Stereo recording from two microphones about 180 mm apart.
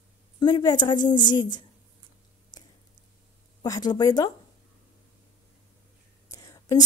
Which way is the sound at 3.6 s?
20° left (ahead or behind).